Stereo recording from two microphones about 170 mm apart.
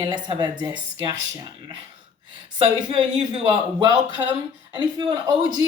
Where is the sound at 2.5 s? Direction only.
30° right (ahead or behind).